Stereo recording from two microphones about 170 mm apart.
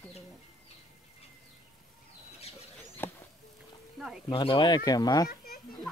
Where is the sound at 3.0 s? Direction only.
10° left (ahead or behind).